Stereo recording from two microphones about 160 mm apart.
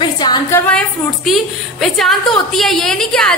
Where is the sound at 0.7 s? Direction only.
Centre (ahead or behind).